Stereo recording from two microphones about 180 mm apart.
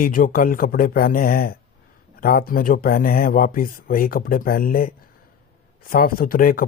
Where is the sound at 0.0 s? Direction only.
50° left (ahead or behind).